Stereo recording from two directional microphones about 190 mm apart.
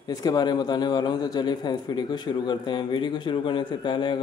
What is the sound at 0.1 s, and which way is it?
A man's voice, 20° left (ahead or behind).